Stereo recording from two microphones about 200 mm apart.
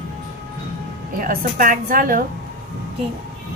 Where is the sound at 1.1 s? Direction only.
45° right (ahead or behind).